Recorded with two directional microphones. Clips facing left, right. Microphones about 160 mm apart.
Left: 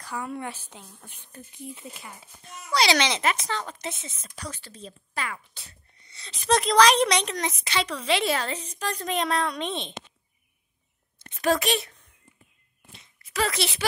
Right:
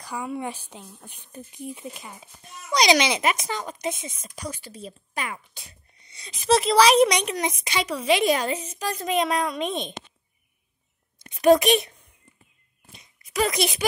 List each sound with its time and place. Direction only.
0.0 s speech: 10° right (ahead or behind)
6.4 s speech: 5° right (ahead or behind)
11.1 s a sound: 15° right (ahead or behind)